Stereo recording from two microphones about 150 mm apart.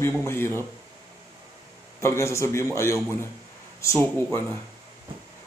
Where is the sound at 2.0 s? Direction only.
20° left (ahead or behind).